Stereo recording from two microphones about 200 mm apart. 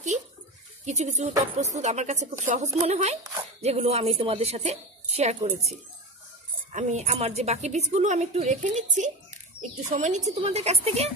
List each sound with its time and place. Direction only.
0.8 s a woman's voice: 35° right (ahead or behind)